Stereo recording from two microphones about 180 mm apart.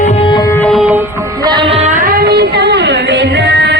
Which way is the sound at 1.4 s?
25° right (ahead or behind).